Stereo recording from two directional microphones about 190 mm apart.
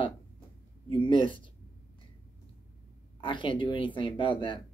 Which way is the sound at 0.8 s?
25° left (ahead or behind).